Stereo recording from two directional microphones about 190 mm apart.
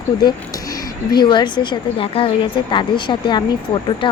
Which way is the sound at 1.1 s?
25° left (ahead or behind).